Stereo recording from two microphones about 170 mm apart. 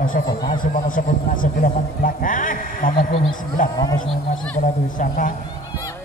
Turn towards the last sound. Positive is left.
turn(degrees=55)  # may be behind; listen again after turning